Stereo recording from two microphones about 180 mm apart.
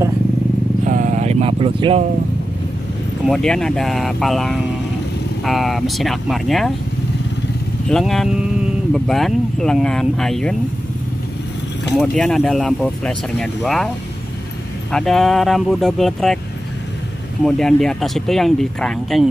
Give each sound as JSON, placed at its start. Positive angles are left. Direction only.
{"t": 0.8, "sound": "vehicle", "side_deg": -45}
{"t": 3.3, "sound": "speech", "side_deg": 5}
{"t": 7.9, "sound": "speech", "side_deg": 0}
{"t": 12.0, "sound": "speech", "side_deg": 0}
{"t": 14.9, "sound": "speech", "side_deg": 5}
{"t": 17.4, "sound": "speech", "side_deg": 5}